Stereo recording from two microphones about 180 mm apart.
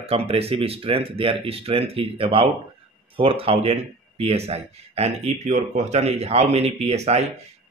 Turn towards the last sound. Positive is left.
turn(degrees=-35)  # may be behind; listen again after turning